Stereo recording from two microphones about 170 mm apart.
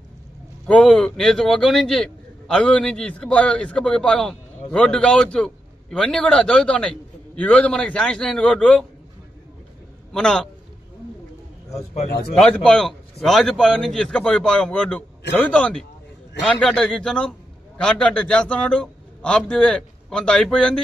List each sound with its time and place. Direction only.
0.7 s a man's voice: 5° left (ahead or behind)
10.1 s a man's voice: 5° left (ahead or behind)
11.7 s speech: 40° left (ahead or behind)
12.4 s a man's voice: 5° left (ahead or behind)